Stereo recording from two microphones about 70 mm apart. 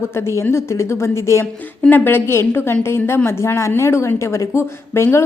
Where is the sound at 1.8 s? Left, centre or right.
Left.